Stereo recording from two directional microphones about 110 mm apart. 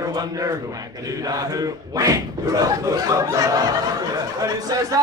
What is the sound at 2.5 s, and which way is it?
Speech, 35° right (ahead or behind).